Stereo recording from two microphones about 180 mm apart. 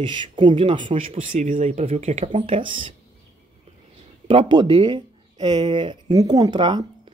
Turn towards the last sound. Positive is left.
turn(degrees=-25)  # may be behind; listen again after turning